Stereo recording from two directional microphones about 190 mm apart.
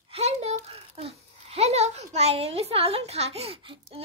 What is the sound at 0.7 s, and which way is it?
A child's voice, 30° right (ahead or behind).